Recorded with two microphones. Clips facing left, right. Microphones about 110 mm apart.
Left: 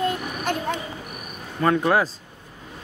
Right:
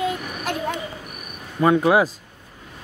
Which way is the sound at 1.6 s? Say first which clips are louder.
Right 3 dB; 10° right (ahead or behind).